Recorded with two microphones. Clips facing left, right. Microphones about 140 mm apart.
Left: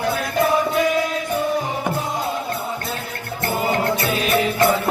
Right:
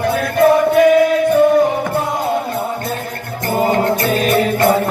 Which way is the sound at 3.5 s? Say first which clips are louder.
Right 6 dB; 45° right (ahead or behind).